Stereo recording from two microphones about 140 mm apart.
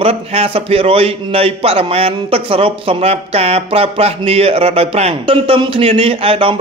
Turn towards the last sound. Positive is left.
turn(degrees=-40)  # may be behind; listen again after turning